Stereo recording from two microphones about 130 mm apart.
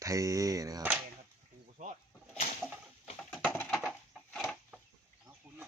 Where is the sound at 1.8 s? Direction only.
70° right (ahead or behind).